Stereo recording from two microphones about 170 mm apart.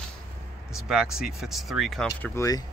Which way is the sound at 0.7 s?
5° right (ahead or behind).